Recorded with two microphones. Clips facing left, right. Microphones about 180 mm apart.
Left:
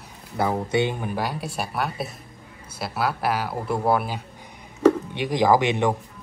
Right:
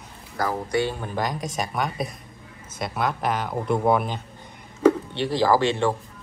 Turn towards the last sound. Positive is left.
turn(degrees=15)  # may be behind; listen again after turning